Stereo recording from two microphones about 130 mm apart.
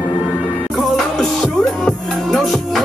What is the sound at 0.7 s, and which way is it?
Music, centre (ahead or behind).